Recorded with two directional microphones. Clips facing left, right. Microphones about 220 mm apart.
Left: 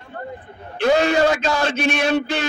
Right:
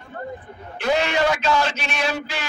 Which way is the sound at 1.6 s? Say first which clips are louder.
Left 5 dB; 50° left (ahead or behind).